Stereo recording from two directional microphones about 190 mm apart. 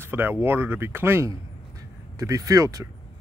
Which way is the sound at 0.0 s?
10° right (ahead or behind).